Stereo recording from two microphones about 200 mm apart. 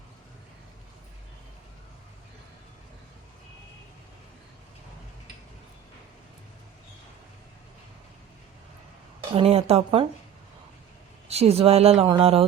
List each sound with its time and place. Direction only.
9.3 s speech: 30° right (ahead or behind)
11.3 s speech: 30° right (ahead or behind)